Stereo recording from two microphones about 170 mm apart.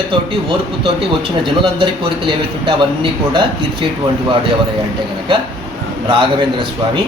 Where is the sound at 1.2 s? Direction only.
30° right (ahead or behind).